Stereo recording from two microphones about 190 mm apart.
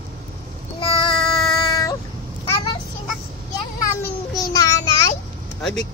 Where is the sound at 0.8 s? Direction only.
25° left (ahead or behind).